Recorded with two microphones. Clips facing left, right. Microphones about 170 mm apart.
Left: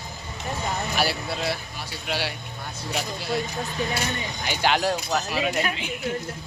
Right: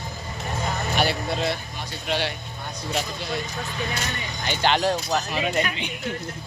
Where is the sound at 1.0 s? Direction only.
5° left (ahead or behind).